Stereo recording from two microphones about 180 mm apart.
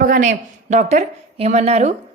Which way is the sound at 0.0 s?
45° right (ahead or behind).